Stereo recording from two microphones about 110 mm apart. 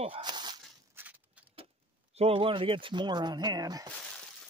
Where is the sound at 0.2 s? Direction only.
40° right (ahead or behind).